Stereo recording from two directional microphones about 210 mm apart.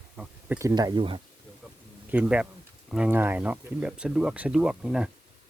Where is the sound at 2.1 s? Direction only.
5° right (ahead or behind).